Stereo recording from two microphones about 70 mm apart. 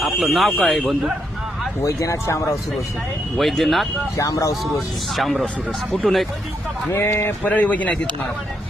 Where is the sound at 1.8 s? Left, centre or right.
Left.